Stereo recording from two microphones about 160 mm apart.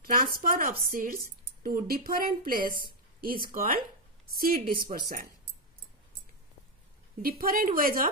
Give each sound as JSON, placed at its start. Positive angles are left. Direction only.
{"t": 0.0, "sound": "a woman's voice", "side_deg": -65}
{"t": 7.2, "sound": "a woman's voice", "side_deg": -65}